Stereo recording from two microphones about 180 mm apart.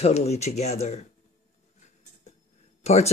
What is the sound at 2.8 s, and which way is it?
Speech, 35° left (ahead or behind).